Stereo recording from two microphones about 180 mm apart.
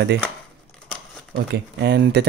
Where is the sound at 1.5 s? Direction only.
70° right (ahead or behind).